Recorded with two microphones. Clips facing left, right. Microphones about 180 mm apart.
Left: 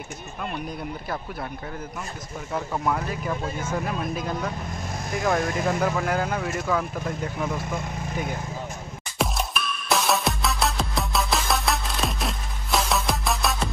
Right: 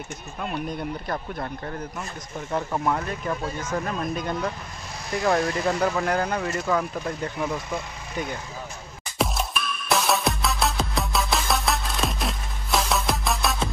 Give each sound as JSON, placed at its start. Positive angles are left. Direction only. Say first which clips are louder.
{"t": 0.5, "sound": "speech", "louder": "right 4 dB", "side_deg": 0}
{"t": 2.5, "sound": "speech", "louder": "right 1 dB", "side_deg": 0}
{"t": 9.8, "sound": "music", "louder": "even", "side_deg": 0}